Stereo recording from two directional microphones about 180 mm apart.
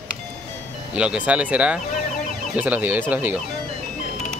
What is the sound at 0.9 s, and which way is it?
Speech, 5° right (ahead or behind).